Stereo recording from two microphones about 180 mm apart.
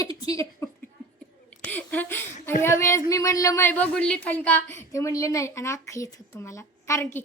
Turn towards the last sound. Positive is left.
turn(degrees=15)  # may be behind; listen again after turning